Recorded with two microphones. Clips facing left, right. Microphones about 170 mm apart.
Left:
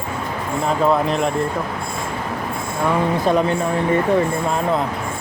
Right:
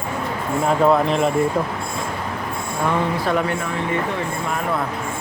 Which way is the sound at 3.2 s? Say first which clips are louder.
Left 4 dB; 20° left (ahead or behind).